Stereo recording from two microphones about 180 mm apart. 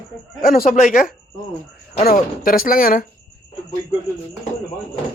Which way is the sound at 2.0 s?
55° left (ahead or behind).